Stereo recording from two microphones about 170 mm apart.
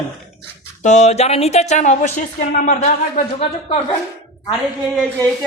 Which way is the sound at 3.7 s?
30° left (ahead or behind).